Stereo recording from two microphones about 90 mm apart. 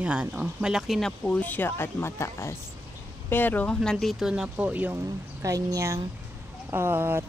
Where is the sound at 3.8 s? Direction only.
5° left (ahead or behind).